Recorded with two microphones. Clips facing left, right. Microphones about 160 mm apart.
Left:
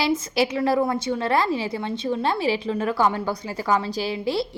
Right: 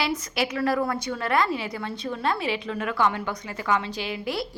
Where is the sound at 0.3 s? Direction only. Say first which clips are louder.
Left 3 dB; 25° left (ahead or behind).